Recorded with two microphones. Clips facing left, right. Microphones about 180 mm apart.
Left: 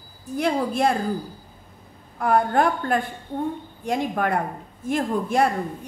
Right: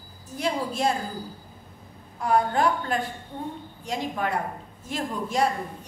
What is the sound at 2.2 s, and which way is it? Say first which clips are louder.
A woman's voice: left 3 dB; 55° left (ahead or behind).